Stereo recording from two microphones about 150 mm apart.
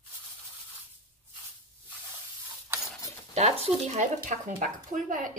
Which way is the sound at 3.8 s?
55° right (ahead or behind).